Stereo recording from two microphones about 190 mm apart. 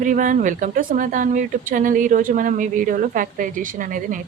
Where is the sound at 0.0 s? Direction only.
45° right (ahead or behind).